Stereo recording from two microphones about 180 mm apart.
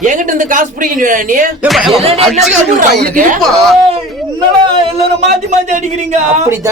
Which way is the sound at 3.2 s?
45° right (ahead or behind).